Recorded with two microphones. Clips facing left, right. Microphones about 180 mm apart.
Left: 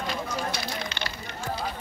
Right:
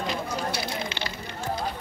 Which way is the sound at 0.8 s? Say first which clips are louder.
Right 2 dB; 25° right (ahead or behind).